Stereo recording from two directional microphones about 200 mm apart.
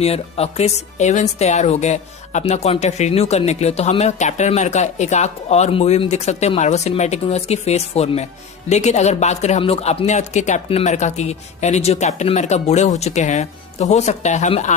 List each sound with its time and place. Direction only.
0.0 s speech: 30° left (ahead or behind)